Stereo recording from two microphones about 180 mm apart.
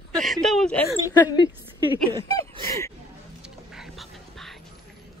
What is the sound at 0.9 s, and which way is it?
Speech, 20° left (ahead or behind).